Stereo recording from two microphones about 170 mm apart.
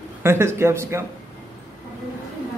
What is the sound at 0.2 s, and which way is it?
Speech, 15° right (ahead or behind).